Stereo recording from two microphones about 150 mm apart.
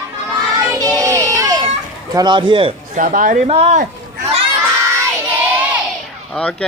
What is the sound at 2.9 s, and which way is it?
Speech, 65° right (ahead or behind).